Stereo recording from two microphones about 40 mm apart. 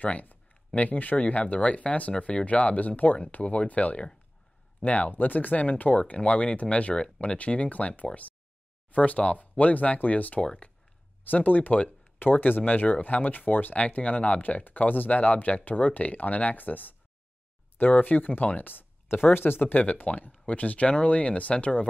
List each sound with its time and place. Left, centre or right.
0.0 s speech: left
1.1 s speech: left
5.1 s speech: left
10.4 s speech: left
11.2 s speech: left
13.7 s speech: left
14.4 s speech: left
19.8 s speech: left